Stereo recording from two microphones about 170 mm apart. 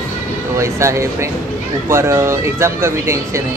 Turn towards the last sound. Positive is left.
turn(degrees=-15)  # may be behind; listen again after turning